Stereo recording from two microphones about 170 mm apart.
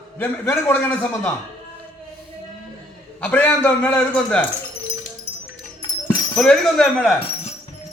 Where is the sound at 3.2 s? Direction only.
10° left (ahead or behind).